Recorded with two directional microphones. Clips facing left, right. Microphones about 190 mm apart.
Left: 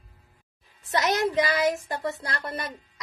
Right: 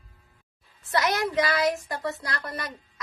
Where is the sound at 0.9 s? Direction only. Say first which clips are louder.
Left 1 dB; 25° left (ahead or behind).